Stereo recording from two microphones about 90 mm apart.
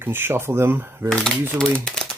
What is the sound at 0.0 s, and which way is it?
Speech, 25° right (ahead or behind).